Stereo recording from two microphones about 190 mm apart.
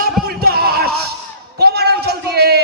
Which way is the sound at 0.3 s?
55° right (ahead or behind).